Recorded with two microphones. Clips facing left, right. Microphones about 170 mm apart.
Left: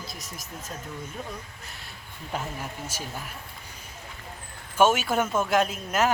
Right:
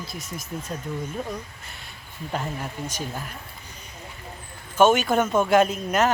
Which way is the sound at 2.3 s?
5° left (ahead or behind).